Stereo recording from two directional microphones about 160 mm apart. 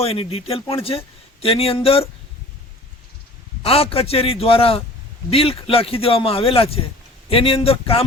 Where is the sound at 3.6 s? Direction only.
35° left (ahead or behind).